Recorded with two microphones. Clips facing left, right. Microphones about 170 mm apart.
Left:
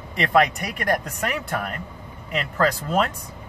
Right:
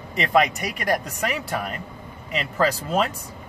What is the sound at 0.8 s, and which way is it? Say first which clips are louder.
Speech: even; 5° right (ahead or behind).